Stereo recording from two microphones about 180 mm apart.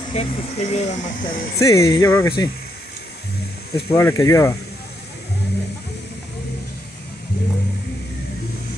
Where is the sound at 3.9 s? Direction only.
15° left (ahead or behind).